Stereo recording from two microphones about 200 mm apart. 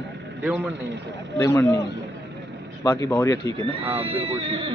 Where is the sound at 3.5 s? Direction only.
30° right (ahead or behind).